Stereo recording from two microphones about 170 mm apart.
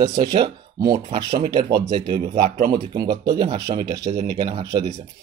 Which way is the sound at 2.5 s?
60° right (ahead or behind).